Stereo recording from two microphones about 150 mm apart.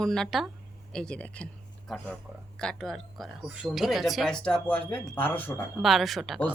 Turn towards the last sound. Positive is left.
turn(degrees=0)  # may be behind; listen again after turning